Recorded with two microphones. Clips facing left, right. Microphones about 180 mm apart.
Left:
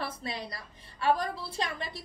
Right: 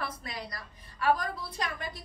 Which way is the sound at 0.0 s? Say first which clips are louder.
Left 2 dB; 25° left (ahead or behind).